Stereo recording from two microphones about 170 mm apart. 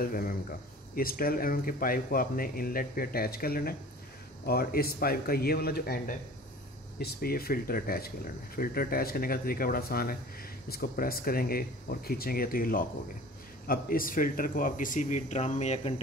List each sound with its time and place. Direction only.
0.0 s speech: 60° left (ahead or behind); by 15.9 s 40° left (ahead or behind)